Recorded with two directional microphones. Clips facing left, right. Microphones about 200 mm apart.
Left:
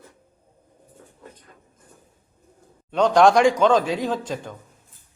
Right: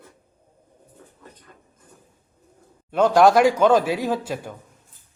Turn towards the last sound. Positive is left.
turn(degrees=-10)  # may be behind; listen again after turning